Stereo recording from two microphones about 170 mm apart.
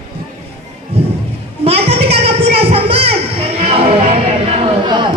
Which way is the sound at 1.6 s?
35° right (ahead or behind).